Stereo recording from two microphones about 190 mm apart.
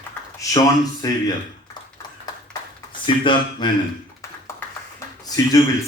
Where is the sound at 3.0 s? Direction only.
25° left (ahead or behind).